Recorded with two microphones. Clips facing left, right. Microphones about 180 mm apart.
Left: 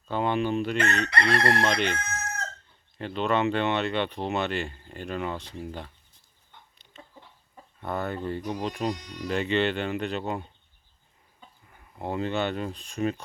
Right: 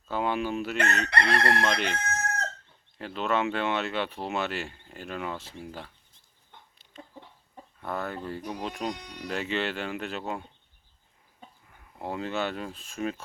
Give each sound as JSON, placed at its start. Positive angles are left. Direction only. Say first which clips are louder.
{"t": 0.1, "sound": "speech", "louder": "left 3 dB", "side_deg": -5}
{"t": 3.0, "sound": "speech", "louder": "left 3 dB", "side_deg": 0}
{"t": 7.8, "sound": "speech", "louder": "left 3 dB", "side_deg": 0}
{"t": 11.7, "sound": "speech", "louder": "left 3 dB", "side_deg": 0}